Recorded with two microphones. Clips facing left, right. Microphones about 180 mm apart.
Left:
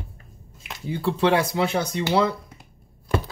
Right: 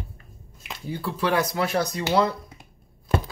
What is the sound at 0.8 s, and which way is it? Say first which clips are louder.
Speech: left 5 dB; 25° left (ahead or behind).